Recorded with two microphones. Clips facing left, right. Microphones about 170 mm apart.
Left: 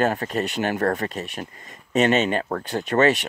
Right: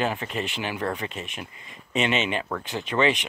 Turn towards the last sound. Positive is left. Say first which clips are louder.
# left 4 dB
turn(degrees=45)  # may be behind; listen again after turning